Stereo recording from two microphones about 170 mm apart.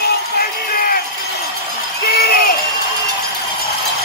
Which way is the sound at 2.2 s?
65° left (ahead or behind).